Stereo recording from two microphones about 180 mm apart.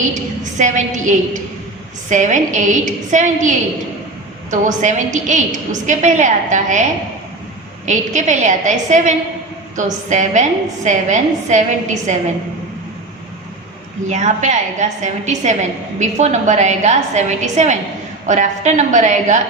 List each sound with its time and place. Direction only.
0.6 s a woman's voice: 45° right (ahead or behind)
4.5 s a woman's voice: 45° right (ahead or behind)
7.9 s a woman's voice: 40° right (ahead or behind)
14.1 s a woman's voice: 40° right (ahead or behind)